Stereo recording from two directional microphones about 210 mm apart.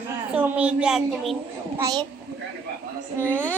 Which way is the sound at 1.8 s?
20° right (ahead or behind).